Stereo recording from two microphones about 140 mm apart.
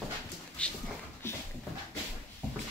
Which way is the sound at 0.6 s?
10° left (ahead or behind).